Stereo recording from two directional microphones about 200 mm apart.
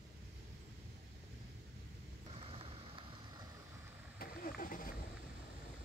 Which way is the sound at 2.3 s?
30° right (ahead or behind).